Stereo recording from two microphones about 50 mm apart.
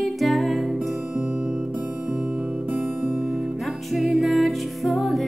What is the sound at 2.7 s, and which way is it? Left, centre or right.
Music, right.